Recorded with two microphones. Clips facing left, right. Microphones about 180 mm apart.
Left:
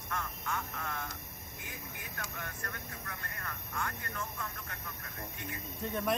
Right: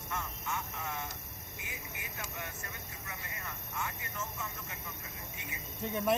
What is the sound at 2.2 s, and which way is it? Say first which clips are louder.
Speech: left 1 dB; 10° right (ahead or behind).